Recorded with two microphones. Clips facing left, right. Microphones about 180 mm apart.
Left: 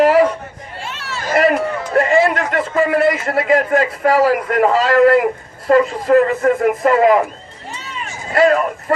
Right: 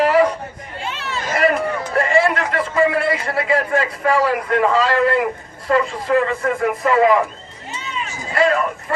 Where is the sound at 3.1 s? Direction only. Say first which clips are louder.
Left 4 dB; 45° left (ahead or behind).